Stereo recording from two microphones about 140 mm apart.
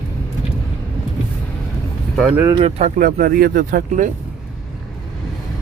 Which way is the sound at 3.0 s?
90° right.